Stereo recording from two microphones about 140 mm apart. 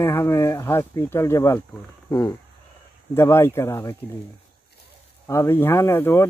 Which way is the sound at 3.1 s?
20° left (ahead or behind).